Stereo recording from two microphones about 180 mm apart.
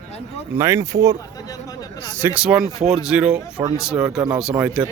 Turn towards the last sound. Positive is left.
turn(degrees=-5)  # may be behind; listen again after turning